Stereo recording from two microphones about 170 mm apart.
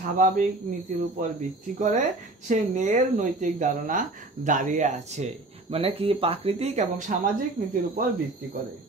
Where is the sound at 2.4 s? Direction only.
45° right (ahead or behind).